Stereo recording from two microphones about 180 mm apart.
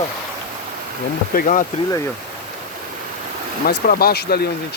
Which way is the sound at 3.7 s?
60° left (ahead or behind).